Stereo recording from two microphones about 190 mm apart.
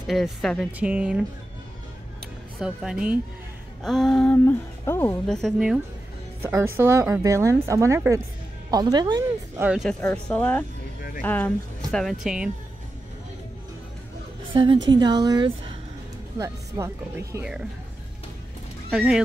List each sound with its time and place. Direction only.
0.0 s speech: centre (ahead or behind)
2.6 s speech: 5° right (ahead or behind); by 5.2 s 15° left (ahead or behind)
5.2 s speech: centre (ahead or behind)
6.4 s speech: 15° right (ahead or behind)
9.6 s speech: 5° right (ahead or behind)
14.5 s a woman's voice: 25° right (ahead or behind)
18.9 s speech: 5° right (ahead or behind)